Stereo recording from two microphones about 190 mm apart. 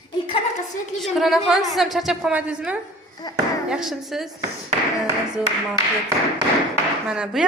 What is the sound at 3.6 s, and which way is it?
Speech, 5° right (ahead or behind).